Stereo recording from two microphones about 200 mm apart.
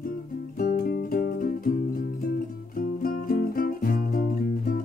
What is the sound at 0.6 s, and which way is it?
Music, 45° left (ahead or behind).